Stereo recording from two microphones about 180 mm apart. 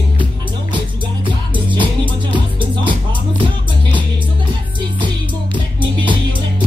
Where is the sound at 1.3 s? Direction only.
25° right (ahead or behind).